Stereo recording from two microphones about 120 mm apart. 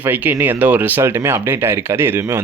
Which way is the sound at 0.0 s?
15° right (ahead or behind).